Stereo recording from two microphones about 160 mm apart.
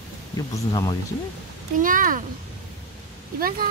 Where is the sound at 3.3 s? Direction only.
65° right (ahead or behind).